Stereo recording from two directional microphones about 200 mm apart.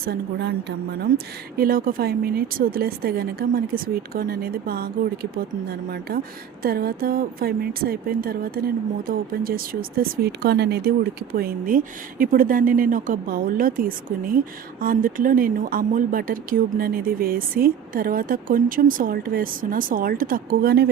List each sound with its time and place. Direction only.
0.0 s a woman's voice: 55° right (ahead or behind)
1.5 s speech: 45° right (ahead or behind)